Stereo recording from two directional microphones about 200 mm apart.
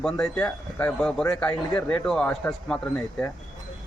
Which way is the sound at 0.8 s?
5° left (ahead or behind).